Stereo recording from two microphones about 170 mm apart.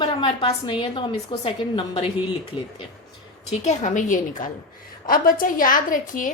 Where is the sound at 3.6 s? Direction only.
45° left (ahead or behind).